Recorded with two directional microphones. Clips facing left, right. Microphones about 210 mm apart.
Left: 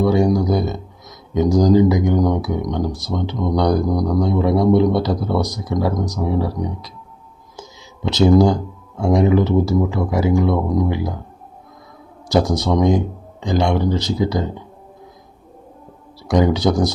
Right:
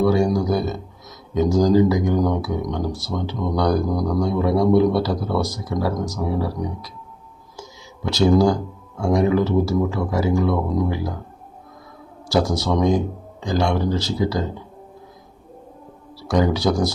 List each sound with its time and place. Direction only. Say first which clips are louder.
0.0 s speech: left 2 dB; 20° left (ahead or behind)
8.0 s speech: left 3 dB; 20° left (ahead or behind)
12.3 s speech: left 3 dB; 20° left (ahead or behind)
16.2 s speech: left 3 dB; 20° left (ahead or behind)